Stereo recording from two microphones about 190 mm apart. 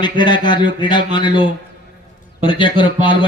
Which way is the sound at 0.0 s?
25° left (ahead or behind).